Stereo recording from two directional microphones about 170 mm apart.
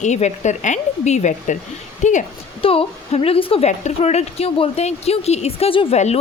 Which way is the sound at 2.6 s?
35° left (ahead or behind).